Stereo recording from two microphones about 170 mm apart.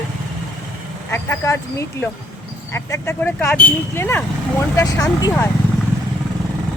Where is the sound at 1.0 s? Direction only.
15° left (ahead or behind).